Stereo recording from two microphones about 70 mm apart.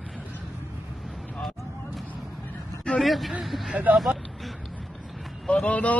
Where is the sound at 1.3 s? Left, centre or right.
Centre.